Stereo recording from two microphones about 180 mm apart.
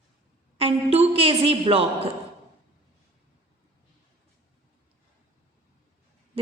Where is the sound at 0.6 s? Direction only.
35° right (ahead or behind).